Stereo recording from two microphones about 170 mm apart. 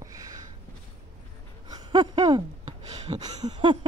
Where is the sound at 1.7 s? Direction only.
25° right (ahead or behind).